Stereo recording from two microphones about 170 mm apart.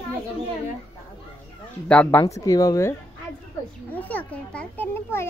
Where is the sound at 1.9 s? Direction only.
10° left (ahead or behind).